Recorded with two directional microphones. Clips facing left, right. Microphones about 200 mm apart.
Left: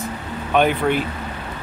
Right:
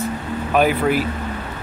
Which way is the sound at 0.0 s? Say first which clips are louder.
Right 4 dB; 5° right (ahead or behind).